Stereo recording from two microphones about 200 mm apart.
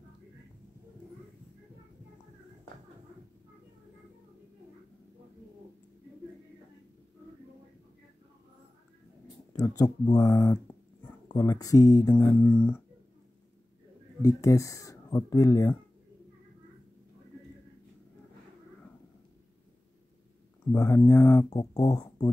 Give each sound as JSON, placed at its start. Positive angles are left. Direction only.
{"t": 9.6, "sound": "speech", "side_deg": 20}
{"t": 14.2, "sound": "speech", "side_deg": 15}
{"t": 20.7, "sound": "speech", "side_deg": 15}